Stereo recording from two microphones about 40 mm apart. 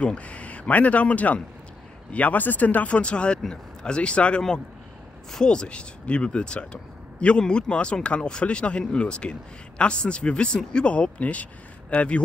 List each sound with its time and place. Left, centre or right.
0.0 s speech: left
2.4 s speech: left
3.0 s speech: left
5.4 s speech: left